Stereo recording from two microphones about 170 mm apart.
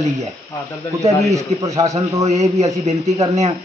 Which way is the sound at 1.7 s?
40° right (ahead or behind).